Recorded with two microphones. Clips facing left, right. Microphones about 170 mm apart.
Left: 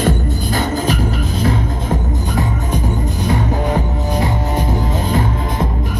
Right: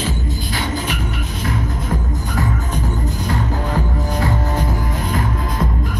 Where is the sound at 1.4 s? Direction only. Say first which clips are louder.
Left 3 dB; 25° left (ahead or behind).